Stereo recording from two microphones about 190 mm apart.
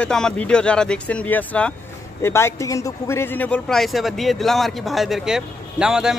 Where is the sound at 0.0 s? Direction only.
5° left (ahead or behind).